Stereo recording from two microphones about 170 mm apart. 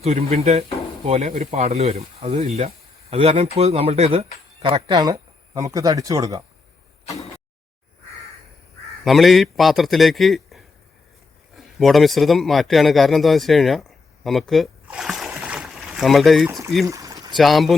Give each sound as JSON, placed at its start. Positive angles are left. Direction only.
{"t": 0.0, "sound": "speech", "side_deg": -40}
{"t": 9.0, "sound": "a man's voice", "side_deg": 0}
{"t": 14.3, "sound": "a sound", "side_deg": 0}
{"t": 16.5, "sound": "speech", "side_deg": -20}
{"t": 16.8, "sound": "pour", "side_deg": -20}
{"t": 17.3, "sound": "a man's voice", "side_deg": 0}